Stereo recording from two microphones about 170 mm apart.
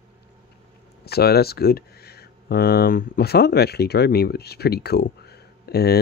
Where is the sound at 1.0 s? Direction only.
70° left (ahead or behind).